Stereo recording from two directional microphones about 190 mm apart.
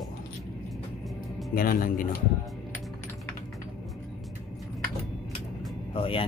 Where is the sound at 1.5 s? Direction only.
50° left (ahead or behind).